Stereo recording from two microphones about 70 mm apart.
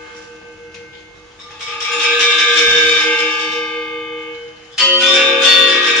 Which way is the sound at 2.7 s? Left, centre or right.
Centre.